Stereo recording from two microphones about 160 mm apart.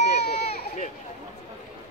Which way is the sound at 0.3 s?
40° left (ahead or behind).